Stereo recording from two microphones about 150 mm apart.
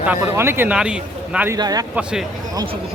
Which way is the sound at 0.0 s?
10° right (ahead or behind).